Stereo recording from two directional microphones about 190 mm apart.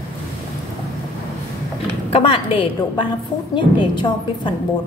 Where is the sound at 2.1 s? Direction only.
30° left (ahead or behind).